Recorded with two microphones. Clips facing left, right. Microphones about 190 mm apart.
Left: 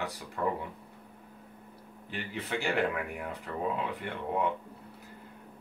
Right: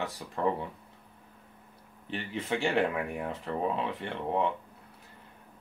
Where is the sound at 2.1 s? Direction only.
25° right (ahead or behind).